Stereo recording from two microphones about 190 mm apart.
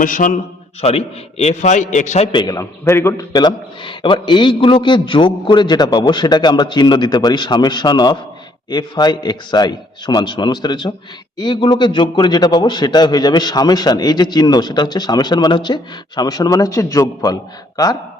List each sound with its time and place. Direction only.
0.0 s a man's voice: 45° left (ahead or behind)
0.8 s a man's voice: 35° left (ahead or behind); by 17.3 s 15° left (ahead or behind)